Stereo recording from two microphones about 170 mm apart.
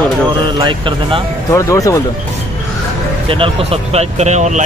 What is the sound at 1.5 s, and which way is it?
Speech, 20° left (ahead or behind).